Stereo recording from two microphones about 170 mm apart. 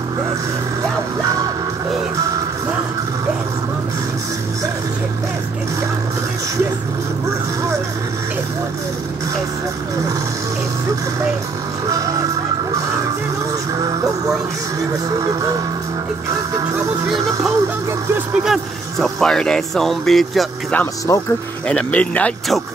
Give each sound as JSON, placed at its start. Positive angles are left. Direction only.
{"t": 13.7, "sound": "music", "side_deg": -20}
{"t": 15.0, "sound": "speech", "side_deg": -20}
{"t": 16.5, "sound": "music", "side_deg": -20}
{"t": 18.1, "sound": "speech", "side_deg": 0}
{"t": 21.1, "sound": "speech", "side_deg": 15}